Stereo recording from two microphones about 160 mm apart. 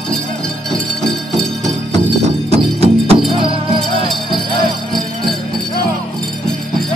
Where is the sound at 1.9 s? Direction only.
40° right (ahead or behind).